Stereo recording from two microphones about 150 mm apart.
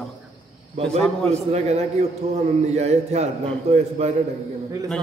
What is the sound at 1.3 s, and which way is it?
A man's voice, 45° right (ahead or behind).